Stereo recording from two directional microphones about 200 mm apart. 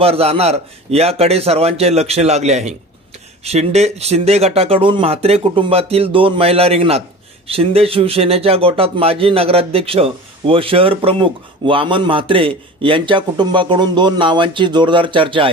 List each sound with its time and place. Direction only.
0.0 s a man's voice: 30° right (ahead or behind)